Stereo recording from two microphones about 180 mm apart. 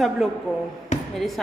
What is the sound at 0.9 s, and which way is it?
Basketball bounce, 40° left (ahead or behind).